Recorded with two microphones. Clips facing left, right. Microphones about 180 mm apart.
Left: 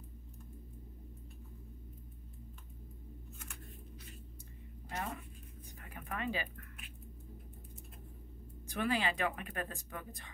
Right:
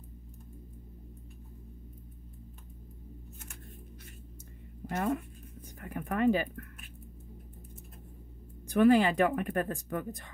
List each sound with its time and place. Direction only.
4.8 s speech: 50° right (ahead or behind)
5.8 s a sound: 50° right (ahead or behind)
8.6 s speech: 50° right (ahead or behind)